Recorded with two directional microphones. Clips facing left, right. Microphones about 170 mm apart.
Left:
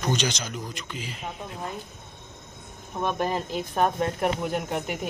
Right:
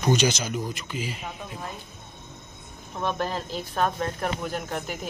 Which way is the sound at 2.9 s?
15° left (ahead or behind).